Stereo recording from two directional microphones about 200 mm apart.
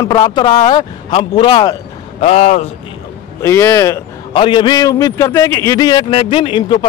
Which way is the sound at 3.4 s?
15° left (ahead or behind).